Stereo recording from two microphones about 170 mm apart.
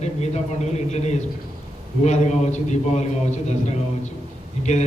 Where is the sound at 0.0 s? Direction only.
40° left (ahead or behind).